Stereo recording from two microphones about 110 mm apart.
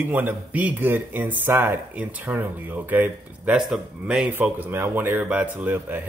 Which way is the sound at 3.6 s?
5° right (ahead or behind).